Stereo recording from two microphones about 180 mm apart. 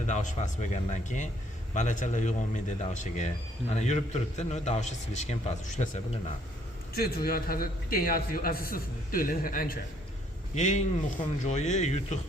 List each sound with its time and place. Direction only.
0.1 s speech: 40° left (ahead or behind)
6.9 s a man's voice: 60° left (ahead or behind)
10.5 s speech: 40° left (ahead or behind)